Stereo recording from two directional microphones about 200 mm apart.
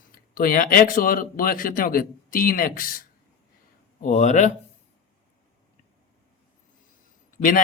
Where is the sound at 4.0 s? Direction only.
35° left (ahead or behind).